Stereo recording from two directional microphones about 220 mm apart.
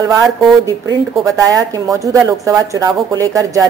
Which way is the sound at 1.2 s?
15° right (ahead or behind).